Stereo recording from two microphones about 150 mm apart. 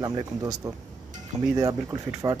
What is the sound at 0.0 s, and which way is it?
Speech, 25° right (ahead or behind).